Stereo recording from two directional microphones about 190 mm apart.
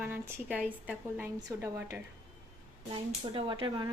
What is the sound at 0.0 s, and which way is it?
A woman's voice, 10° right (ahead or behind).